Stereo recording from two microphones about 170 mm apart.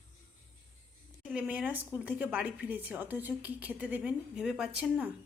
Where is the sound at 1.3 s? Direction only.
5° right (ahead or behind).